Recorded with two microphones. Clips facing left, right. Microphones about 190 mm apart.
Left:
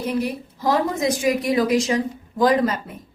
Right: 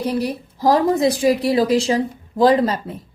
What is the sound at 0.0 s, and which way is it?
Speech, 35° right (ahead or behind).